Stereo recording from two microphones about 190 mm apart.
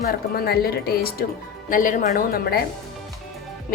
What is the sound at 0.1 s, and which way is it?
A woman's voice, 55° left (ahead or behind).